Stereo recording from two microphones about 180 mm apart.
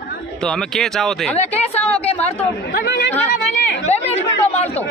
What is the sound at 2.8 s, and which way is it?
Speech, 65° left (ahead or behind).